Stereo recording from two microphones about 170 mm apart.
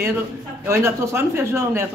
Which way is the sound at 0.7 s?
15° right (ahead or behind).